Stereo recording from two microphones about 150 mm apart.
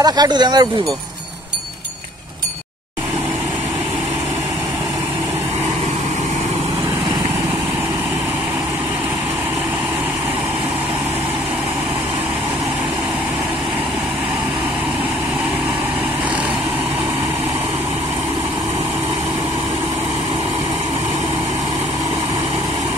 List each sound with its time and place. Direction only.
0.0 s speech: 25° right (ahead or behind)